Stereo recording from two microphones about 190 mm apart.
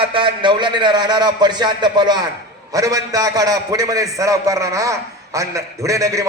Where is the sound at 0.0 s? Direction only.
25° right (ahead or behind).